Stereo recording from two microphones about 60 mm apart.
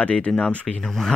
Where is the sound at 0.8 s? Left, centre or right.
Centre.